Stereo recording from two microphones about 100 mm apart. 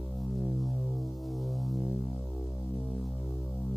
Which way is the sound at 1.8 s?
20° left (ahead or behind).